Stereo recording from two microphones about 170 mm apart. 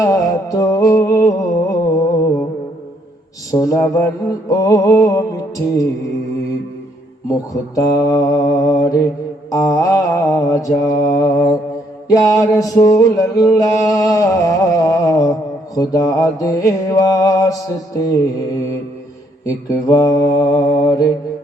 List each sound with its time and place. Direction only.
0.0 s music: 20° left (ahead or behind)
3.5 s music: 20° left (ahead or behind)
7.3 s music: 20° left (ahead or behind)
19.5 s music: 20° left (ahead or behind)